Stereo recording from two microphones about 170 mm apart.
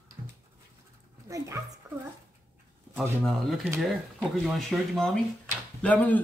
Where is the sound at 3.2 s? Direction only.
Centre (ahead or behind).